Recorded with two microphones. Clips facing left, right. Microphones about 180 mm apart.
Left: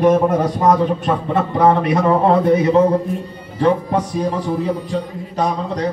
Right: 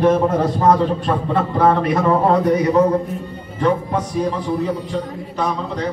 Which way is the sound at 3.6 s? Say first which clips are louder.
Left 2 dB; 35° left (ahead or behind).